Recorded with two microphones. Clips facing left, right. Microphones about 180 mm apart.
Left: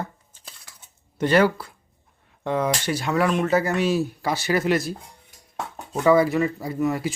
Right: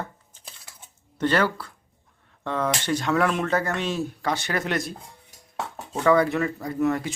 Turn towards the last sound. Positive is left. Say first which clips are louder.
# even
turn(degrees=5)  # may be behind; listen again after turning